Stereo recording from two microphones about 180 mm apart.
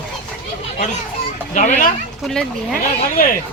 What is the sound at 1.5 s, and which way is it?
Speech, 45° left (ahead or behind).